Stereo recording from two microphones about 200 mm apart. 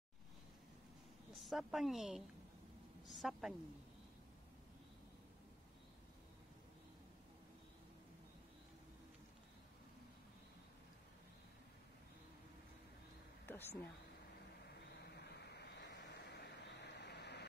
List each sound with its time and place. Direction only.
1.3 s a woman's voice: centre (ahead or behind)
13.5 s a sound: 10° left (ahead or behind)
15.1 s vehicle: 55° left (ahead or behind)